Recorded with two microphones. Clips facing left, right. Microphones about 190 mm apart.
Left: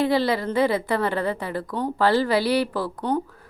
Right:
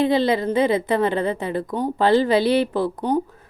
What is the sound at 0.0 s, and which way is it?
A woman's voice, 20° right (ahead or behind).